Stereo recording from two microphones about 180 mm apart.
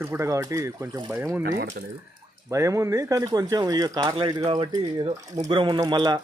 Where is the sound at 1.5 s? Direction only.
50° right (ahead or behind).